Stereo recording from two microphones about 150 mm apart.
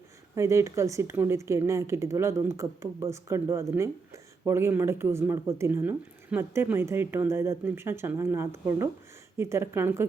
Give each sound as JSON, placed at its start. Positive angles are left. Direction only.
{"t": 0.3, "sound": "speech", "side_deg": -20}